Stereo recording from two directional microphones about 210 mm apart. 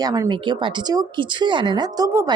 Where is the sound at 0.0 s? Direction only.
20° right (ahead or behind).